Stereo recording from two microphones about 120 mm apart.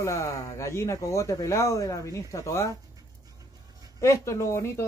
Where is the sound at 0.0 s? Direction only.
25° left (ahead or behind).